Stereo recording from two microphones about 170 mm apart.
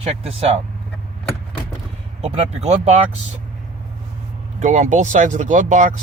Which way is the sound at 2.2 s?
40° right (ahead or behind).